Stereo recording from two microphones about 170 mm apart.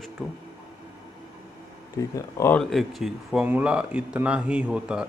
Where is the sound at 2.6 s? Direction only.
Centre (ahead or behind).